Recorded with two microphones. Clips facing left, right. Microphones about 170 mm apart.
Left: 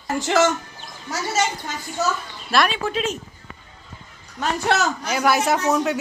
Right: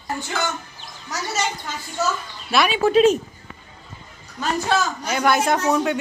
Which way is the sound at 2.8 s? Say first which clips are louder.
Right 10 dB; 35° right (ahead or behind).